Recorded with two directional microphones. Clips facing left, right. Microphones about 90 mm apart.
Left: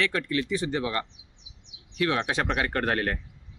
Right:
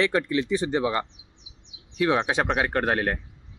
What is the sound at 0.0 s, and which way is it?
Speech, 25° right (ahead or behind).